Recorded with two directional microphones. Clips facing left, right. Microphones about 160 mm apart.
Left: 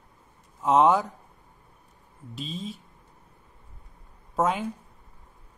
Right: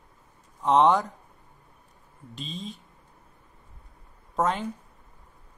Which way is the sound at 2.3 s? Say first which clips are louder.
Left 2 dB; 5° left (ahead or behind).